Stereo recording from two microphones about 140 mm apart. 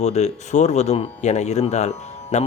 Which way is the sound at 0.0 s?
50° left (ahead or behind).